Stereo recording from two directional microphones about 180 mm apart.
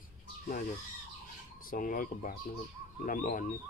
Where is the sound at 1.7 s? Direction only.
50° left (ahead or behind).